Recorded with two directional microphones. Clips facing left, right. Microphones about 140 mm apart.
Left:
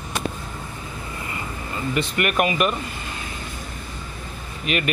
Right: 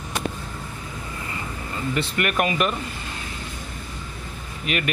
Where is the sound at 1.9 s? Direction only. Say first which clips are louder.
Left 2 dB; 15° left (ahead or behind).